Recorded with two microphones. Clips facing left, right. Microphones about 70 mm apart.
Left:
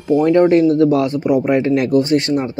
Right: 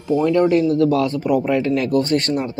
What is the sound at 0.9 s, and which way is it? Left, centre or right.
Speech, left.